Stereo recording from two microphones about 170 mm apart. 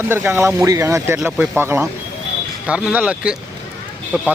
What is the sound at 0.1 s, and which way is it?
Speech, 15° right (ahead or behind).